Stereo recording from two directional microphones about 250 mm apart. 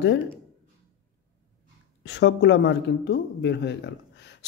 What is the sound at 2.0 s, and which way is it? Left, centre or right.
Speech, left.